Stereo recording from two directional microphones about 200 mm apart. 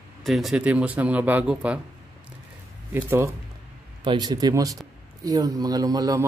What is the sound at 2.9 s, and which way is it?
A man's voice, 10° right (ahead or behind).